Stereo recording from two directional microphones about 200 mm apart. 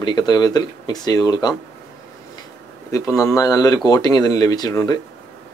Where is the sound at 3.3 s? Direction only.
20° left (ahead or behind).